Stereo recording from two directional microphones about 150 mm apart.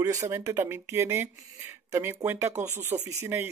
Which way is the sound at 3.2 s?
15° right (ahead or behind).